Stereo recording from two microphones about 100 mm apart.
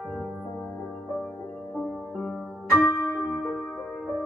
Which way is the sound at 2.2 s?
5° left (ahead or behind).